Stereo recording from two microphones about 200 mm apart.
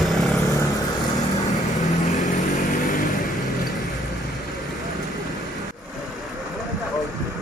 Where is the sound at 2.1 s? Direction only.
35° left (ahead or behind).